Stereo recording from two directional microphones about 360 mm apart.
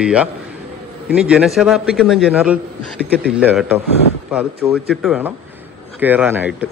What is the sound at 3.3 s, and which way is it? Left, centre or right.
Speech, centre.